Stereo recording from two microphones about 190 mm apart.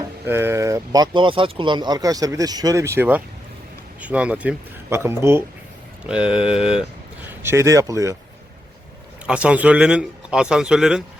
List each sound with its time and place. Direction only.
0.3 s a man's voice: 10° right (ahead or behind)
7.4 s speech: 15° right (ahead or behind)
9.2 s a man's voice: 5° right (ahead or behind)